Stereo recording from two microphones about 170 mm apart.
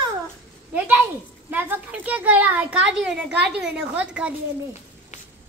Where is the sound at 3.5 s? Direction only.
5° right (ahead or behind).